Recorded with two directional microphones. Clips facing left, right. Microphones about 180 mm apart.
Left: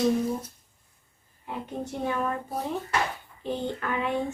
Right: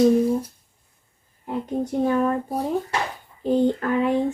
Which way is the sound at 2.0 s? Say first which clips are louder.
Right 8 dB; 40° right (ahead or behind).